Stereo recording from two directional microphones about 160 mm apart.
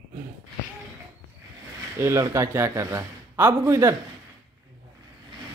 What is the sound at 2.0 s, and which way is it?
A man's voice, 15° right (ahead or behind).